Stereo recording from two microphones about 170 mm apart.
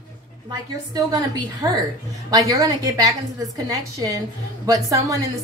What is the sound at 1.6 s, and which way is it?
A woman's voice, 15° right (ahead or behind).